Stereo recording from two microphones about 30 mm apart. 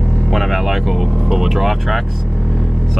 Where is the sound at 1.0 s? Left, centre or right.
Centre.